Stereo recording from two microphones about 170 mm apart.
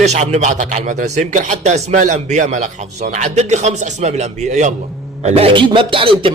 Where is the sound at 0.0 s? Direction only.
40° right (ahead or behind).